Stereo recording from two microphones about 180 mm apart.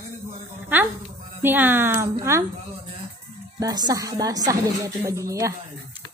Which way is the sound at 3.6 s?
20° right (ahead or behind).